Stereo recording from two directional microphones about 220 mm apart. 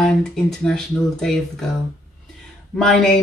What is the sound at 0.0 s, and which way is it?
Speech, centre (ahead or behind).